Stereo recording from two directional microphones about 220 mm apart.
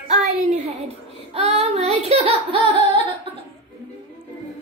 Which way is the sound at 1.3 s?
30° right (ahead or behind).